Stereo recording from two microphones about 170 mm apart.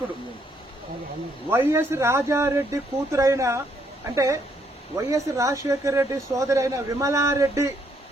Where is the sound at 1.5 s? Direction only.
15° right (ahead or behind).